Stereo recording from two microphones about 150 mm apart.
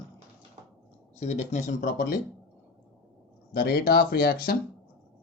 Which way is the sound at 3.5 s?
90° left.